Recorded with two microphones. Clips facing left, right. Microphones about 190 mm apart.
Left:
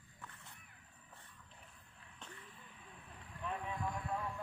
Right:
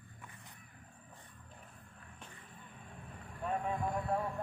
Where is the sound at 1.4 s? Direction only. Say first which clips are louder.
Right 6 dB; 50° right (ahead or behind).